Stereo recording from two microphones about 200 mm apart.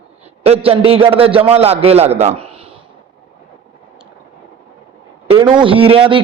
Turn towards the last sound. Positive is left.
turn(degrees=-25)  # may be behind; listen again after turning